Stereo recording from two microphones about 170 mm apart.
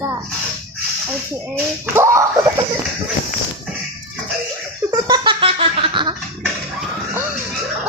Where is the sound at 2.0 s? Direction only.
15° right (ahead or behind).